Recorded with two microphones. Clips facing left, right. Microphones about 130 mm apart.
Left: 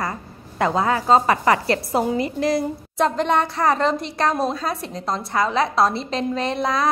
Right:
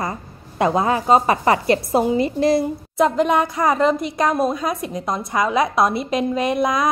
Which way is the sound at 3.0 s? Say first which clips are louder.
Right 3 dB; 5° right (ahead or behind).